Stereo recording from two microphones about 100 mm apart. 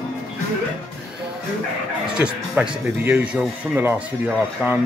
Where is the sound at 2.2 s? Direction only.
10° right (ahead or behind).